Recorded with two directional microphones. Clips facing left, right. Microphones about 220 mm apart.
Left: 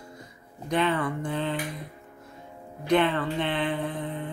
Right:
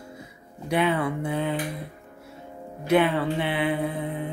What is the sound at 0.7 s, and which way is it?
Mantra, 10° right (ahead or behind).